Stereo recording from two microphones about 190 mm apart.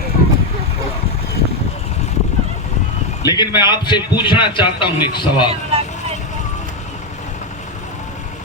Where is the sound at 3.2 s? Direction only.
20° left (ahead or behind).